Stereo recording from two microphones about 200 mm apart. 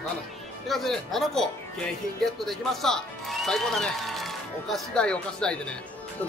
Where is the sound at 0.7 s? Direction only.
Centre (ahead or behind).